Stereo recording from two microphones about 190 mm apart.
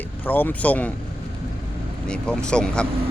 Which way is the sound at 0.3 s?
10° left (ahead or behind).